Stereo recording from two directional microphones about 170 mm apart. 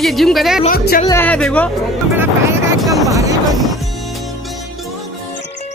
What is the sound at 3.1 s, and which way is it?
Speech, 20° right (ahead or behind).